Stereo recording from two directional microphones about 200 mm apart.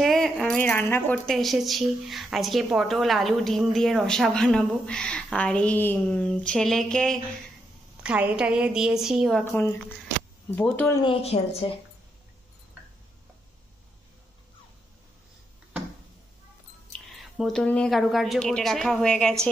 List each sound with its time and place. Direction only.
0.0 s speech: centre (ahead or behind)
9.4 s speech: 10° left (ahead or behind)
11.6 s speech: 25° left (ahead or behind)
17.2 s speech: centre (ahead or behind)